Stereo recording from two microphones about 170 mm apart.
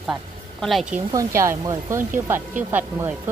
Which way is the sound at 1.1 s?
15° right (ahead or behind).